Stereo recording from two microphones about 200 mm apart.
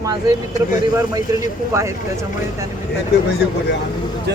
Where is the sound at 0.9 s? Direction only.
15° right (ahead or behind).